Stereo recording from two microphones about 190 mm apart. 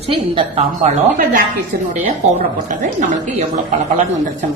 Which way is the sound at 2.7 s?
40° right (ahead or behind).